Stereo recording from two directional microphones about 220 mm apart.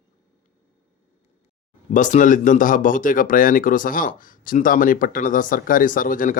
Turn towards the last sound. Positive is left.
turn(degrees=40)  # may be behind; listen again after turning